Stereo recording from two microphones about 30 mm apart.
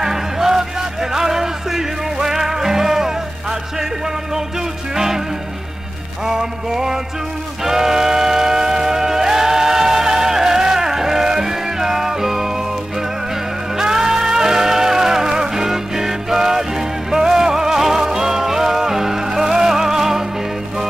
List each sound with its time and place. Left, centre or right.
0.0 s music: centre
4.9 s music: centre
6.2 s music: centre
13.7 s music: centre